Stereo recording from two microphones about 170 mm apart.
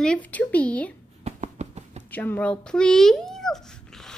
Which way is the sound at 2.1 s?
10° left (ahead or behind).